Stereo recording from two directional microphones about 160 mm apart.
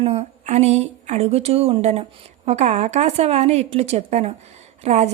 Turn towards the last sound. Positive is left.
turn(degrees=-45)  # may be behind; listen again after turning